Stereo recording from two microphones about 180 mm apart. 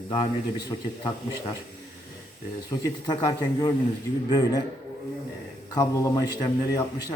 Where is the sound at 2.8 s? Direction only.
20° left (ahead or behind).